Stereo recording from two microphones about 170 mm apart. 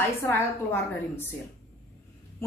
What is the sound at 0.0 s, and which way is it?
A woman's voice, 15° left (ahead or behind).